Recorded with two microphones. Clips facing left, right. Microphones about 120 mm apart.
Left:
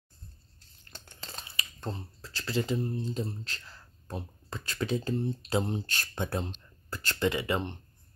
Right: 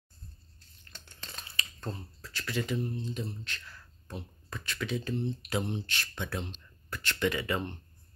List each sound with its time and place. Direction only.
1.4 s speech: 20° left (ahead or behind)
5.8 s speech: 40° left (ahead or behind)
6.6 s a sound: 35° left (ahead or behind)
7.2 s speech: 25° left (ahead or behind)